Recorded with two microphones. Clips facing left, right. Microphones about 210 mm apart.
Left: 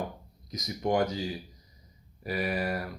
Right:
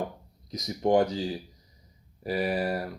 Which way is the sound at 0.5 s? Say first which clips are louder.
Right 5 dB; 30° right (ahead or behind).